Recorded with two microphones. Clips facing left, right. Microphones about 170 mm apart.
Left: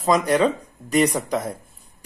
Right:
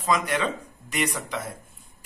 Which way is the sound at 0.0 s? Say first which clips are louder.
Left 7 dB; 40° left (ahead or behind).